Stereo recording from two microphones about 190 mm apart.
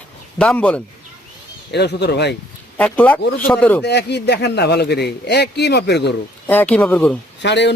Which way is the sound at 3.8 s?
60° left (ahead or behind).